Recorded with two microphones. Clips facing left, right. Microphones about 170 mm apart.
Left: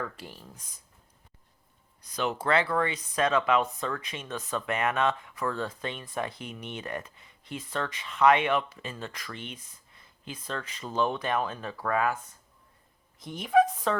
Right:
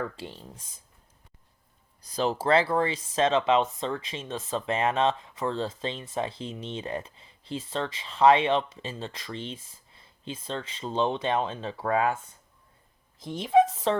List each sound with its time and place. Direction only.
0.2 s speech: 25° right (ahead or behind)
2.0 s speech: 30° right (ahead or behind)
13.2 s speech: 30° right (ahead or behind)